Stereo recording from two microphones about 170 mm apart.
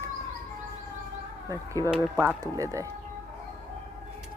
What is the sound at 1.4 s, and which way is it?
A woman's voice, 20° right (ahead or behind).